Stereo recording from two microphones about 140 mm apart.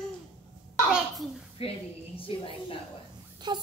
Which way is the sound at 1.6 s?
40° left (ahead or behind).